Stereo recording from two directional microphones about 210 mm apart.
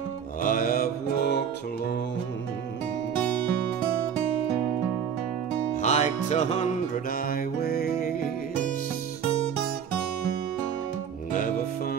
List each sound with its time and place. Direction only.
0.4 s mantra: 40° left (ahead or behind)
5.8 s music: 35° left (ahead or behind)
11.3 s music: 40° left (ahead or behind)